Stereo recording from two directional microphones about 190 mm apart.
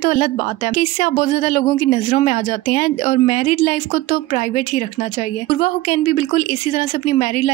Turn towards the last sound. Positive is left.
turn(degrees=40)  # may be behind; listen again after turning